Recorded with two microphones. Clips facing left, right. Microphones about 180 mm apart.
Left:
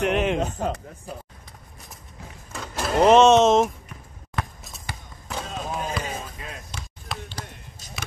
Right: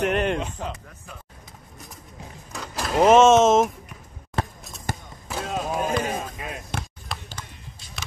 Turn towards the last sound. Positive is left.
turn(degrees=40)  # may be behind; listen again after turning